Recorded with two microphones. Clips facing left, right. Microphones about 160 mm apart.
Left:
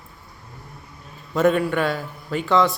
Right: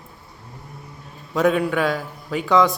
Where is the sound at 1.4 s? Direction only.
Centre (ahead or behind).